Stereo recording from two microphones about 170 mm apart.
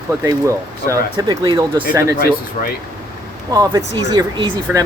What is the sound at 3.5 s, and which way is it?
Speech, 20° right (ahead or behind).